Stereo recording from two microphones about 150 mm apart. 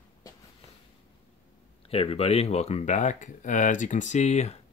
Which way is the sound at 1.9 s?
40° left (ahead or behind).